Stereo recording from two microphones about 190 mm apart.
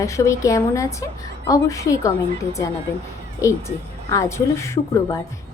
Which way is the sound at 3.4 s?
15° left (ahead or behind).